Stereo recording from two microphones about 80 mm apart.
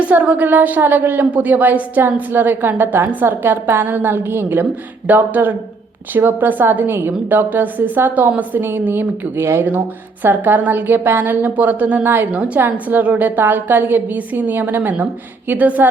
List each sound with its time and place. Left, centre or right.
0.0 s a woman's voice: centre